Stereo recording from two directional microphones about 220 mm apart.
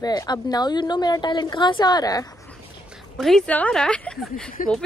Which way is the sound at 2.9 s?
Centre (ahead or behind).